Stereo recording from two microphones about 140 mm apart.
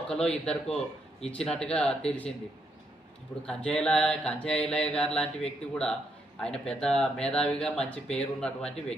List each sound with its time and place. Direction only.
0.1 s speech: 5° left (ahead or behind)
3.4 s mantra: 5° left (ahead or behind)
6.4 s speech: 5° left (ahead or behind)